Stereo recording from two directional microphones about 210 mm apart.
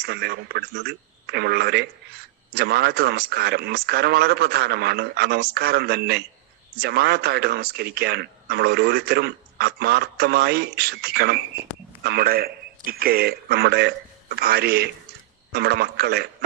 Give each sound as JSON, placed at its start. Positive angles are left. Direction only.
{"t": 0.0, "sound": "a man's voice", "side_deg": -50}